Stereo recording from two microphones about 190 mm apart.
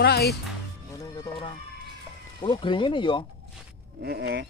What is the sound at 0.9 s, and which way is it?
Music, 20° left (ahead or behind).